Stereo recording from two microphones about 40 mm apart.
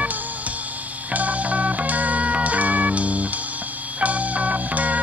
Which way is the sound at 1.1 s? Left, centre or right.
Right.